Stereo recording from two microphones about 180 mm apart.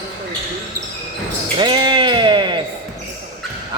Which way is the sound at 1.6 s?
25° right (ahead or behind).